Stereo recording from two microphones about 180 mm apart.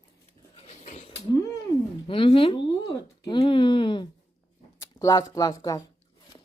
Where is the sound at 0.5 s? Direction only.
35° left (ahead or behind).